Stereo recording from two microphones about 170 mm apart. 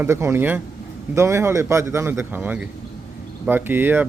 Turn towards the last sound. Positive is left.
turn(degrees=-10)  # may be behind; listen again after turning